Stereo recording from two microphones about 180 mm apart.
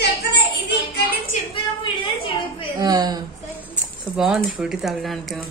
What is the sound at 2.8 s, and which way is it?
Speech, 20° right (ahead or behind).